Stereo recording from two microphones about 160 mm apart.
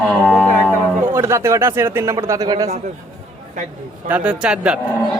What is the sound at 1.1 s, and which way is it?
Speech, 15° right (ahead or behind).